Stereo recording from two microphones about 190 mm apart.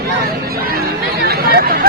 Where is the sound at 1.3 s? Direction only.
50° right (ahead or behind).